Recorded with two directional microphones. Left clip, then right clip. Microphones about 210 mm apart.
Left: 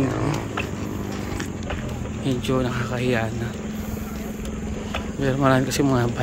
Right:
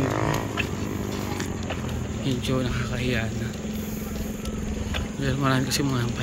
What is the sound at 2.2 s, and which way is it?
Speech, 15° left (ahead or behind).